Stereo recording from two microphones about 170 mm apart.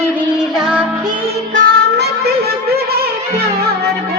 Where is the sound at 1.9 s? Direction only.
70° right (ahead or behind).